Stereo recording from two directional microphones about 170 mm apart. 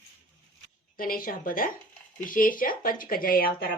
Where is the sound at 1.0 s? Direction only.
55° left (ahead or behind).